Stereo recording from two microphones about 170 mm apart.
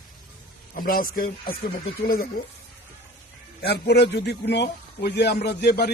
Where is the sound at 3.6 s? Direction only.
75° left (ahead or behind).